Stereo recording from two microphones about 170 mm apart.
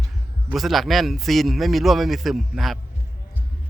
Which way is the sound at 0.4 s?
Centre (ahead or behind).